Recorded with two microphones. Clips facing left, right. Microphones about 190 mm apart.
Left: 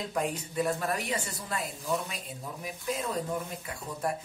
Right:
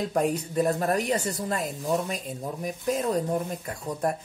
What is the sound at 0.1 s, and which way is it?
Speech, 45° right (ahead or behind).